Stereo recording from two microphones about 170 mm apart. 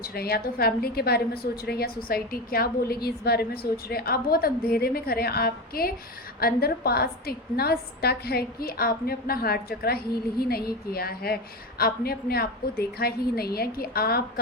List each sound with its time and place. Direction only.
0.0 s a woman's voice: 65° left (ahead or behind)